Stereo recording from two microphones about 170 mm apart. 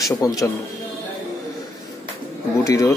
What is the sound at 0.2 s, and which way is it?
Speech, 20° left (ahead or behind).